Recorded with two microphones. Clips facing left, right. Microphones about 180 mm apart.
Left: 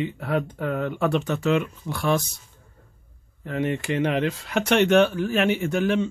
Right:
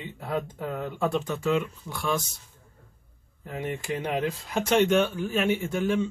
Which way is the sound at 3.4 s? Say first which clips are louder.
Left 7 dB; 80° left.